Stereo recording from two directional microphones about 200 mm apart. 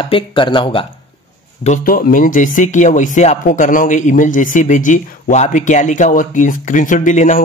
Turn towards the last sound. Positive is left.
turn(degrees=35)  # may be behind; listen again after turning